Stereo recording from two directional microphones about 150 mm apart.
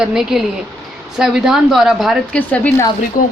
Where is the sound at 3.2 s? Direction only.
65° left (ahead or behind).